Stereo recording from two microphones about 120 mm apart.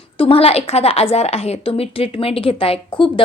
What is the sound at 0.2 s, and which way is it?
A woman's voice, 50° left (ahead or behind).